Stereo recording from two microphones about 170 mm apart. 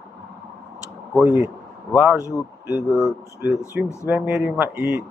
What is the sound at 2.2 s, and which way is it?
A man's voice, 20° left (ahead or behind).